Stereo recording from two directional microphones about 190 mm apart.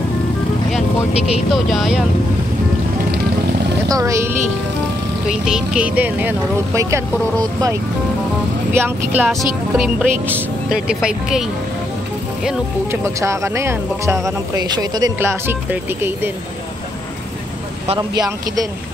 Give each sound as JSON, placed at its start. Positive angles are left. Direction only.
{"t": 1.1, "sound": "speech", "side_deg": 35}
{"t": 1.5, "sound": "speech", "side_deg": 0}
{"t": 3.9, "sound": "speech", "side_deg": -15}
{"t": 5.3, "sound": "speech", "side_deg": -5}
{"t": 8.7, "sound": "speech", "side_deg": -10}
{"t": 12.4, "sound": "speech", "side_deg": -15}
{"t": 17.8, "sound": "speech", "side_deg": -20}